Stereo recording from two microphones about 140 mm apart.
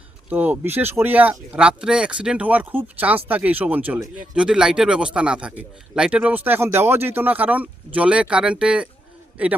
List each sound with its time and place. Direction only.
0.3 s speech: 10° right (ahead or behind)